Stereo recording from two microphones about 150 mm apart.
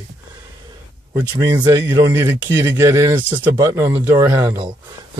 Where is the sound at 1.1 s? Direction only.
25° right (ahead or behind).